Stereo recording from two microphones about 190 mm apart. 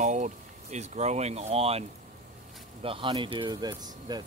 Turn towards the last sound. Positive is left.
turn(degrees=-20)  # may be behind; listen again after turning